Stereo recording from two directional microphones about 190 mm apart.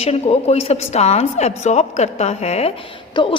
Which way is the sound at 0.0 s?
35° left (ahead or behind).